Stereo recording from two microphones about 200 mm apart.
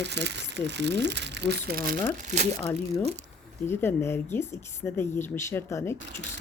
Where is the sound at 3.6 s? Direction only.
10° left (ahead or behind).